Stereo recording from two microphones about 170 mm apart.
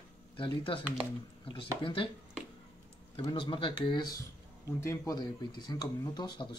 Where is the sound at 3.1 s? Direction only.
30° left (ahead or behind).